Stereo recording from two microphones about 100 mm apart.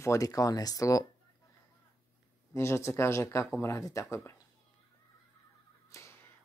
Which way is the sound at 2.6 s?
30° left (ahead or behind).